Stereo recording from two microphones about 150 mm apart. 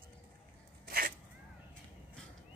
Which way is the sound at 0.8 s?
75° right (ahead or behind).